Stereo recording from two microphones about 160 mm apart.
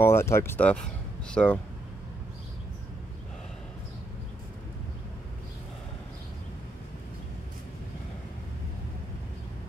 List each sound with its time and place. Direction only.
0.0 s speech: 15° left (ahead or behind)